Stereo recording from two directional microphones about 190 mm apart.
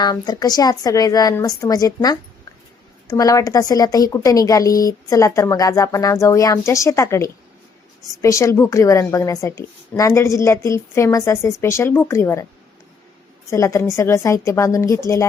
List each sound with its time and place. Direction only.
0.0 s a woman's voice: 20° left (ahead or behind)
13.5 s a woman's voice: 15° left (ahead or behind)